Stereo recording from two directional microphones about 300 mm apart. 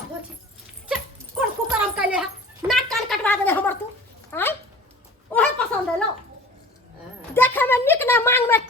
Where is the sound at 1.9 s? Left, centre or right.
Centre.